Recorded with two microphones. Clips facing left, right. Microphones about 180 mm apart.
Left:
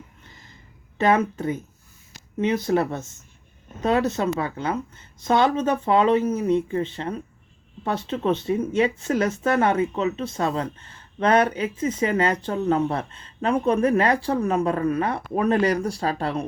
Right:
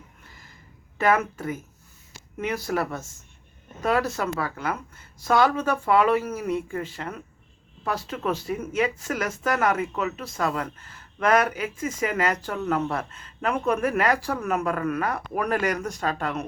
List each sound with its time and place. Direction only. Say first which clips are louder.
0.9 s speech: left 2 dB; 25° left (ahead or behind)